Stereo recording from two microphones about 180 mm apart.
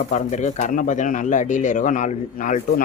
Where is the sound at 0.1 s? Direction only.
40° left (ahead or behind).